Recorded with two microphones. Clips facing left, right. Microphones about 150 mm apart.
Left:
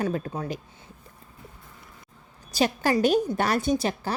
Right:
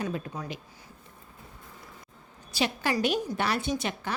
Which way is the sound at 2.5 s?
40° left (ahead or behind).